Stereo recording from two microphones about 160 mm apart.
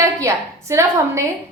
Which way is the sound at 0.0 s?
20° right (ahead or behind).